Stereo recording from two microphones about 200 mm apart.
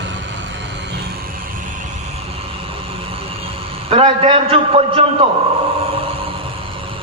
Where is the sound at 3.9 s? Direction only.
25° right (ahead or behind).